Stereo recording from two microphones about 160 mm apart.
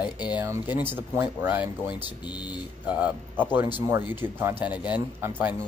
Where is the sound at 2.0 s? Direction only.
25° left (ahead or behind).